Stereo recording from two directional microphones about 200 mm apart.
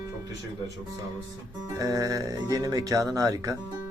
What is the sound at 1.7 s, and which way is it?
Speech, 15° right (ahead or behind).